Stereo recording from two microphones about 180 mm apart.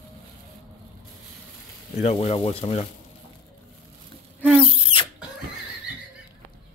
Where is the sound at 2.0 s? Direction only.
35° left (ahead or behind).